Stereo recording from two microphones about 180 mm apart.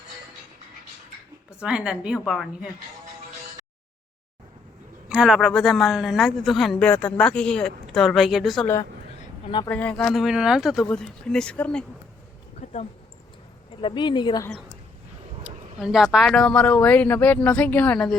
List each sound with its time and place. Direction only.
1.6 s a man's voice: 5° right (ahead or behind)
5.0 s a man's voice: 5° right (ahead or behind)
8.6 s a man's voice: 15° left (ahead or behind)
12.5 s a sound: 40° left (ahead or behind)
13.8 s speech: 25° left (ahead or behind)
15.4 s speech: centre (ahead or behind)